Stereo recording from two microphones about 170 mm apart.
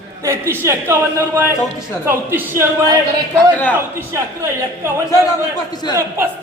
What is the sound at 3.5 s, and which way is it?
Speech, 10° left (ahead or behind).